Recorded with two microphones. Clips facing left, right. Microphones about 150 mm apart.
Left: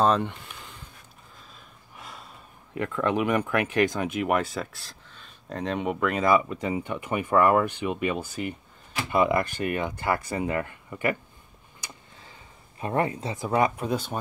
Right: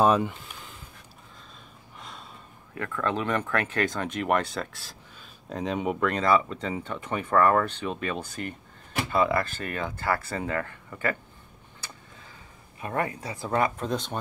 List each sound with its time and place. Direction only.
0.0 s a sound: 5° right (ahead or behind)
2.0 s gasp: 5° left (ahead or behind)
2.7 s speech: 20° left (ahead or behind)
11.8 s tick: 15° left (ahead or behind)
12.8 s speech: 25° left (ahead or behind)
13.5 s speech: 10° left (ahead or behind)